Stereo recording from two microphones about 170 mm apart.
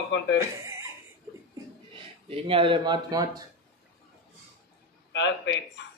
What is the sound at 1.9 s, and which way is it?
Speech, 30° right (ahead or behind).